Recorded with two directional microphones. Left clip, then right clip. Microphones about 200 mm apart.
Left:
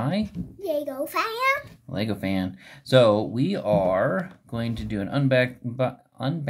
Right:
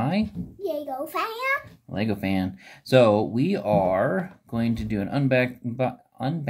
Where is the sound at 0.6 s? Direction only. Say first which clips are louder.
Left 2 dB; 35° left (ahead or behind).